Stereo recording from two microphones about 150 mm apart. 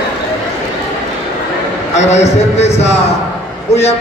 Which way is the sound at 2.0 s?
50° left (ahead or behind).